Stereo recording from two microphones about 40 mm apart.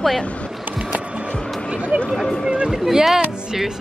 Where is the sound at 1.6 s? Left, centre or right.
Right.